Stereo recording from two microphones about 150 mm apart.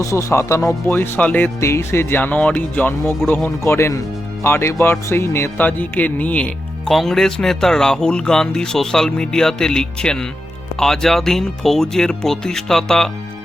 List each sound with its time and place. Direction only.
0.0 s music: 20° left (ahead or behind)
4.4 s speech: 15° left (ahead or behind)